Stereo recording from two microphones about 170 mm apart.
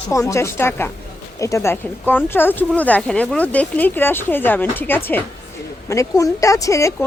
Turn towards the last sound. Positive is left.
turn(degrees=15)  # may be behind; listen again after turning